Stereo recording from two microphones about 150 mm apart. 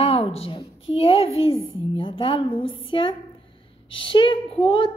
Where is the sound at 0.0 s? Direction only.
40° left (ahead or behind).